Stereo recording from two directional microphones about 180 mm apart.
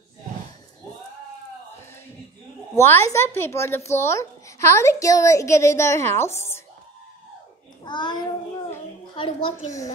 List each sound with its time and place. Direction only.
2.7 s a child's voice: 15° left (ahead or behind)
7.8 s a child's voice: 25° left (ahead or behind)